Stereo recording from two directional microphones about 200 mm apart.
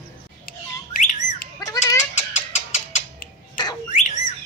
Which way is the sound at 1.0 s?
35° left (ahead or behind).